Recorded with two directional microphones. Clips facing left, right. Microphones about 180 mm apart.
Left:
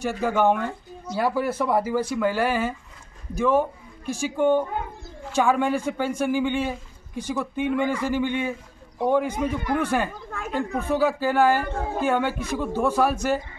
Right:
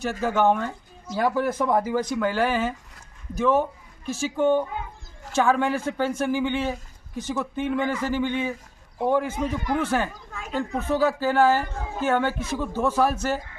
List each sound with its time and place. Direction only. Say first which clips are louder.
0.0 s speech: even; 10° left (ahead or behind)
10.3 s a sound: left 2 dB; 50° left (ahead or behind)
10.8 s speech: even; 10° left (ahead or behind)